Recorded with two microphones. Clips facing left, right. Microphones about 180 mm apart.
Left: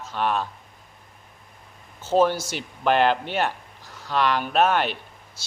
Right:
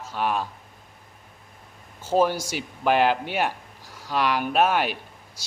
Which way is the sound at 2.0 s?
10° right (ahead or behind).